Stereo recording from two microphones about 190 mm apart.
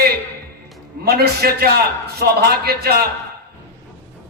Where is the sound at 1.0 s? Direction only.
55° right (ahead or behind).